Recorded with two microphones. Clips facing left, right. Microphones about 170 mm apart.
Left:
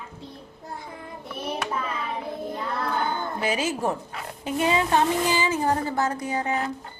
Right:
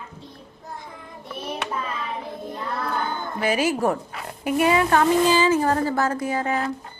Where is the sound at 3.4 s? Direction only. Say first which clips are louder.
Right 5 dB; 20° left (ahead or behind).